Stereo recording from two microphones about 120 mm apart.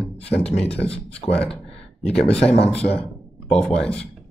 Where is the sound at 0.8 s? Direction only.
55° left (ahead or behind).